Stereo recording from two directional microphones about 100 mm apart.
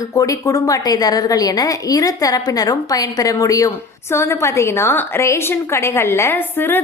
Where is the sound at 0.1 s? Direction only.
35° left (ahead or behind).